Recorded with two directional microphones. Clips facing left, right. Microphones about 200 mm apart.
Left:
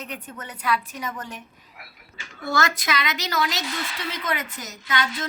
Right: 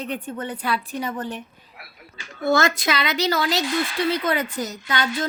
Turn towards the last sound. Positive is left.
turn(degrees=-35)  # may be behind; listen again after turning